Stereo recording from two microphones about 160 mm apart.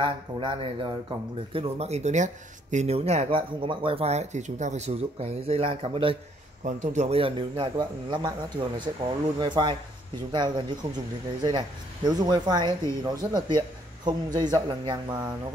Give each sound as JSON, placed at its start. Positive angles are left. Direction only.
{"t": 0.0, "sound": "speech", "side_deg": -35}
{"t": 6.6, "sound": "a man's voice", "side_deg": -50}